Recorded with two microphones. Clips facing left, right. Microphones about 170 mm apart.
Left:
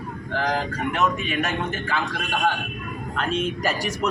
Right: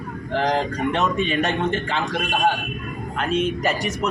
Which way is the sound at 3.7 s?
Centre (ahead or behind).